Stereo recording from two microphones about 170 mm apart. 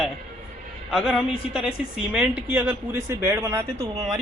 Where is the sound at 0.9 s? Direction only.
Centre (ahead or behind).